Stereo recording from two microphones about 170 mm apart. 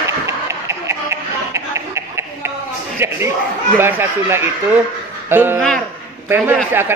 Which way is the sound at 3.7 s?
10° right (ahead or behind).